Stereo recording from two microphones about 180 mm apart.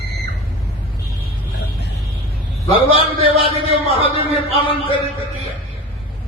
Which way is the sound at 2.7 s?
30° left (ahead or behind).